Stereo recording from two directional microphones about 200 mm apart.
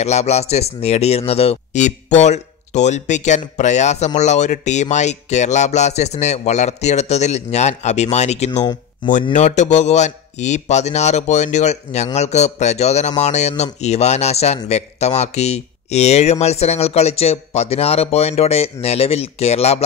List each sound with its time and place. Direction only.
0.0 s speech: 35° left (ahead or behind)